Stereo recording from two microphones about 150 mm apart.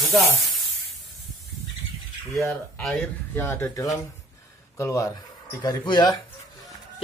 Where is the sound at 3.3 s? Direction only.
15° left (ahead or behind).